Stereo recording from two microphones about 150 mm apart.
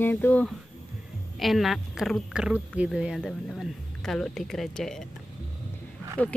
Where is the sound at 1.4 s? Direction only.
Centre (ahead or behind).